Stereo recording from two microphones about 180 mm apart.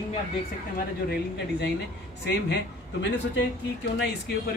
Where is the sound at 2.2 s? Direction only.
70° left (ahead or behind).